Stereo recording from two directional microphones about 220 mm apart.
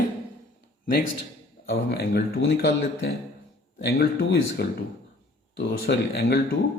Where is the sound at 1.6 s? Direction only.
45° left (ahead or behind).